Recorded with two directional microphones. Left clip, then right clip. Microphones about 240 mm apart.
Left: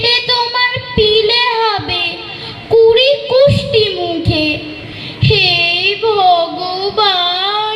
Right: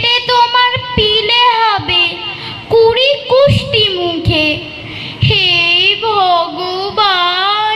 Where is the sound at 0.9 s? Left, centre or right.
Right.